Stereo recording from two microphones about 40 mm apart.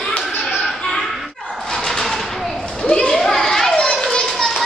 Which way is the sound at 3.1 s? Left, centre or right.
Centre.